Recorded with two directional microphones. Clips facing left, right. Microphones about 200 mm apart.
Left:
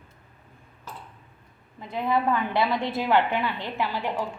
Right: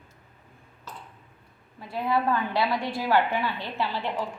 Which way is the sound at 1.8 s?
20° left (ahead or behind).